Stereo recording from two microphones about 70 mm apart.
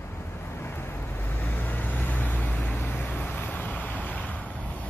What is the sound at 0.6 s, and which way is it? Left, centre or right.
Vehicle, left.